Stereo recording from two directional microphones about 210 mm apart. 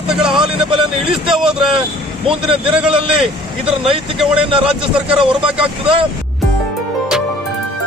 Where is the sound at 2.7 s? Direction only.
5° right (ahead or behind).